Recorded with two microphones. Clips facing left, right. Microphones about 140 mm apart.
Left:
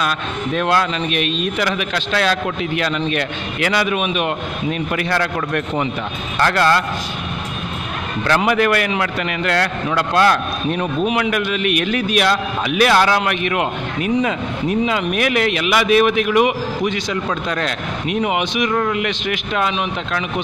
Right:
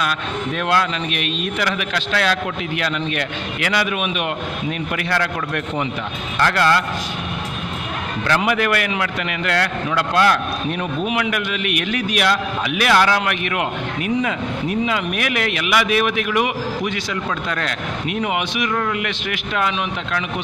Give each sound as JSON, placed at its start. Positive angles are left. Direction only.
{"t": 0.6, "sound": "a man's voice", "side_deg": 30}
{"t": 6.3, "sound": "a man's voice", "side_deg": 40}
{"t": 8.3, "sound": "a man's voice", "side_deg": 35}